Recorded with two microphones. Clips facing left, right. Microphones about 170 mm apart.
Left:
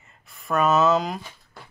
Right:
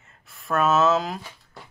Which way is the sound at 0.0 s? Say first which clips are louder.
Even; centre (ahead or behind).